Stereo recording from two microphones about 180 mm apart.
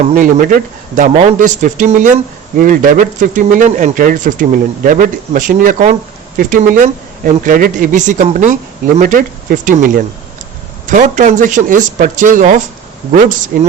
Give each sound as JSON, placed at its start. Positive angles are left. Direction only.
{"t": 0.1, "sound": "speech", "side_deg": -50}